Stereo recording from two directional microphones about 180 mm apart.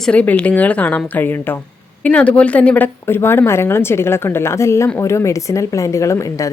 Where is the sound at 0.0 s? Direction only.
5° left (ahead or behind).